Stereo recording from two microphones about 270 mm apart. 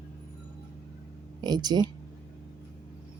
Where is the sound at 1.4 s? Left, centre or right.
Centre.